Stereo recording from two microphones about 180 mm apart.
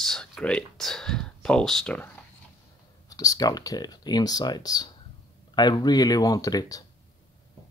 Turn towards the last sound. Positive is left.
turn(degrees=20)  # may be behind; listen again after turning